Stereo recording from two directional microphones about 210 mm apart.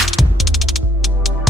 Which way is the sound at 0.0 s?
Centre (ahead or behind).